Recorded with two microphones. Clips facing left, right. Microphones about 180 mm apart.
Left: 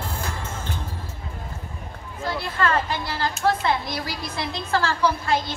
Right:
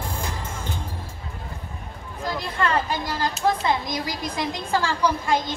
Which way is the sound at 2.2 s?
15° right (ahead or behind).